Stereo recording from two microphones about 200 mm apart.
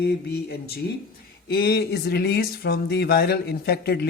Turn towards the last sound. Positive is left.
turn(degrees=55)  # may be behind; listen again after turning